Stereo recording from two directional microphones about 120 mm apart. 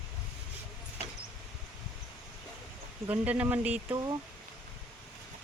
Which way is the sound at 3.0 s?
10° right (ahead or behind).